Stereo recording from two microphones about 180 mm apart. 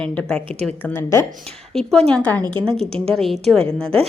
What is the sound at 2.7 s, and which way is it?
Speech, 5° left (ahead or behind).